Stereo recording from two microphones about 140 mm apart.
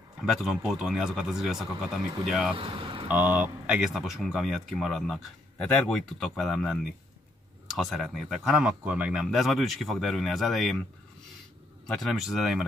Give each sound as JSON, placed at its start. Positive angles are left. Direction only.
{"t": 0.2, "sound": "speech", "side_deg": 0}
{"t": 2.5, "sound": "speech", "side_deg": -40}
{"t": 3.1, "sound": "speech", "side_deg": -10}
{"t": 11.8, "sound": "speech", "side_deg": 5}